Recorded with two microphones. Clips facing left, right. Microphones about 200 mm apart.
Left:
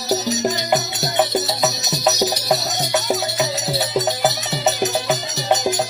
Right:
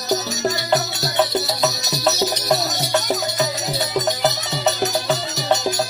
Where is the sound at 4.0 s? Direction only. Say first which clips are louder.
Even; 20° left (ahead or behind).